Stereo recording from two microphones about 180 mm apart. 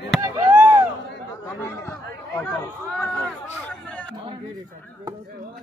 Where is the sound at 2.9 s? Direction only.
5° left (ahead or behind).